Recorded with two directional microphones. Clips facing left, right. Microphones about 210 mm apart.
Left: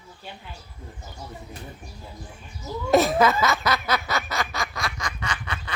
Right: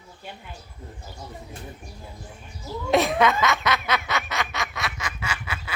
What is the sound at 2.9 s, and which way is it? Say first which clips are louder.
Snicker: left 2 dB; centre (ahead or behind).